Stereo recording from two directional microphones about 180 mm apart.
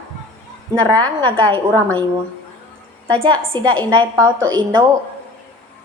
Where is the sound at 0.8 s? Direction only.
10° left (ahead or behind).